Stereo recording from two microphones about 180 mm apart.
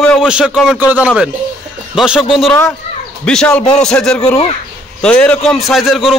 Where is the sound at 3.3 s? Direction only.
5° left (ahead or behind).